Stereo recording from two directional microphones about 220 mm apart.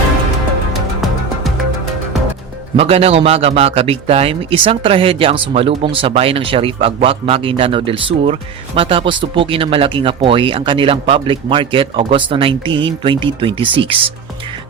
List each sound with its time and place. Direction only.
2.7 s a man's voice: 25° right (ahead or behind)